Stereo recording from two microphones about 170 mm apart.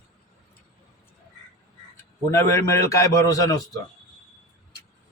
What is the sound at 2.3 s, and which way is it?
A man's voice, 15° left (ahead or behind).